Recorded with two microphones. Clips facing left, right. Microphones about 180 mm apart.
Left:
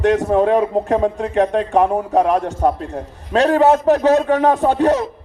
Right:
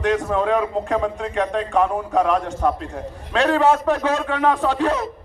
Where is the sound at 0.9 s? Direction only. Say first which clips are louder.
Left 4 dB; 25° left (ahead or behind).